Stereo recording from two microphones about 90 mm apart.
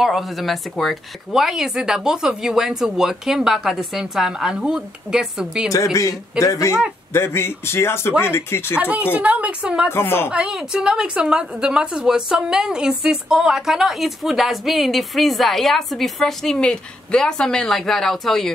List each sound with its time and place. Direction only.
0.0 s a woman's voice: centre (ahead or behind)
6.4 s a man's voice: 35° left (ahead or behind)
8.7 s a woman's voice: 15° right (ahead or behind)
9.8 s a man's voice: 25° left (ahead or behind)
10.3 s a woman's voice: 10° right (ahead or behind)